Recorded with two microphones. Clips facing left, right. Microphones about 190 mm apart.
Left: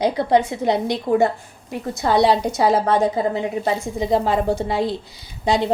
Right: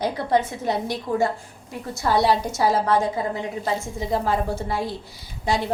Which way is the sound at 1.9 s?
20° left (ahead or behind).